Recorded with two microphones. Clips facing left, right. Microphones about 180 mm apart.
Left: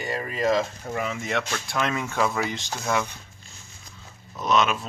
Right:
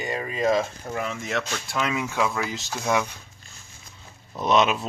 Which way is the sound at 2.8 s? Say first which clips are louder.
Right 2 dB; 15° right (ahead or behind).